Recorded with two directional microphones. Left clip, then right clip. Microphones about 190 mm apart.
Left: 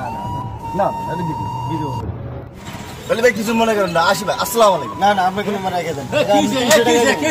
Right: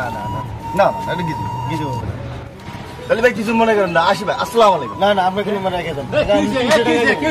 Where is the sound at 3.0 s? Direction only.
Centre (ahead or behind).